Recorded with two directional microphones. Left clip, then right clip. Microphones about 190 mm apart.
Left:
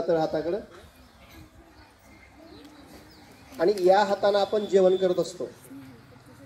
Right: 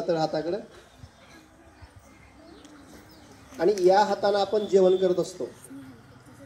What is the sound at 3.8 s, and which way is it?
Speech, 60° right (ahead or behind).